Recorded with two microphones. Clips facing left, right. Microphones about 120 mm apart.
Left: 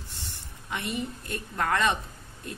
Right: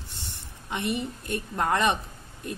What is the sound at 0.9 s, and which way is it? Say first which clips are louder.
A woman's voice: right 2 dB; 25° right (ahead or behind).